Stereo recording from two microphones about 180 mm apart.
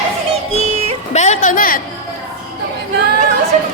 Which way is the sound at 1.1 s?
40° left (ahead or behind).